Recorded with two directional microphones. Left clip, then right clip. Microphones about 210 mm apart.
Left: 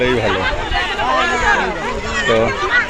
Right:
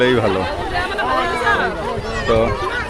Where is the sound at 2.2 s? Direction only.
Centre (ahead or behind).